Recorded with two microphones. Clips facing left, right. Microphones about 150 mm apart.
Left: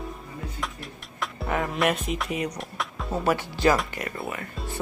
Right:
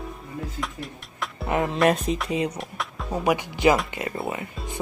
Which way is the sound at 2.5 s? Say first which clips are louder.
Right 1 dB; centre (ahead or behind).